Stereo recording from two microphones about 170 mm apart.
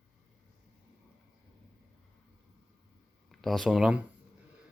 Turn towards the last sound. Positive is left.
turn(degrees=-5)  # may be behind; listen again after turning